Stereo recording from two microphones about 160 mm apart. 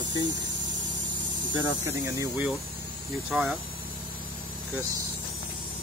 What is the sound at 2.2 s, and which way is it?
Speech, 10° right (ahead or behind).